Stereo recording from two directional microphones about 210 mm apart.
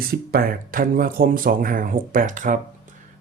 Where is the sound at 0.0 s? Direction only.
45° right (ahead or behind).